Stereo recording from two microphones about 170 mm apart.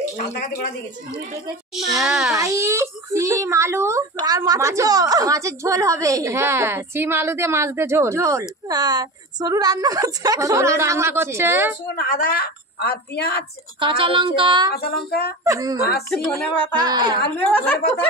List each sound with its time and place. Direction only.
1.8 s a child's voice: centre (ahead or behind)
2.3 s a child's voice: 15° right (ahead or behind)
11.9 s a woman's voice: 55° left (ahead or behind)
13.7 s child singing: 30° right (ahead or behind)
14.7 s a sound: 70° left (ahead or behind)
15.4 s child singing: 20° right (ahead or behind)
16.1 s a child's voice: centre (ahead or behind)
16.8 s child singing: 25° right (ahead or behind)